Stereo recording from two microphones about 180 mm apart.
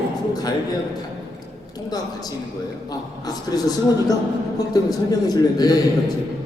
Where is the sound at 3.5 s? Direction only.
20° left (ahead or behind).